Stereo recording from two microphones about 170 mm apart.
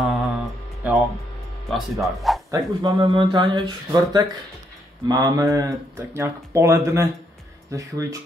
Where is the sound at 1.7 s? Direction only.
Centre (ahead or behind).